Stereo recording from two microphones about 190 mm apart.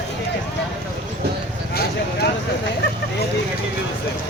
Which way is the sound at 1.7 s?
55° left (ahead or behind).